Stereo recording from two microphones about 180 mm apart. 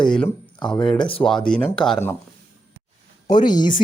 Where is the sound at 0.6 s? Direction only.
25° left (ahead or behind).